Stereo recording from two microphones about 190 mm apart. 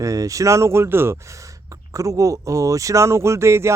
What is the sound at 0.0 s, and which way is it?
A man's voice, 15° right (ahead or behind).